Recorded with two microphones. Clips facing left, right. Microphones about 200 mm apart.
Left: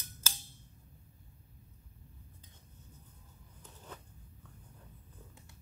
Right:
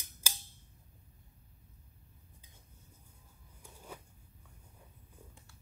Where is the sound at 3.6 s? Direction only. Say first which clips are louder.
Right 1 dB; 10° right (ahead or behind).